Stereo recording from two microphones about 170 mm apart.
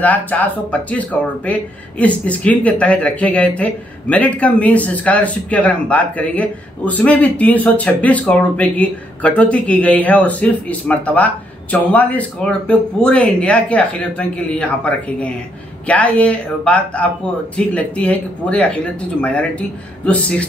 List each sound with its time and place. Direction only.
0.0 s speech: 10° left (ahead or behind)
20.1 s speech: 5° left (ahead or behind)